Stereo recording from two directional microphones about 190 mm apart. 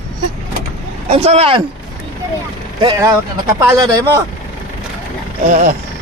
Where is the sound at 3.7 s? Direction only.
15° right (ahead or behind).